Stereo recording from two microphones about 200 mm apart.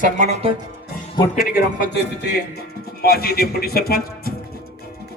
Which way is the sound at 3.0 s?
50° left (ahead or behind).